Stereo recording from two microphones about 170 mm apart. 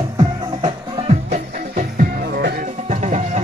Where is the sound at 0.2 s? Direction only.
30° right (ahead or behind).